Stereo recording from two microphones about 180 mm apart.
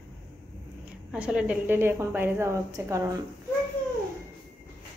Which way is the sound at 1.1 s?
5° right (ahead or behind).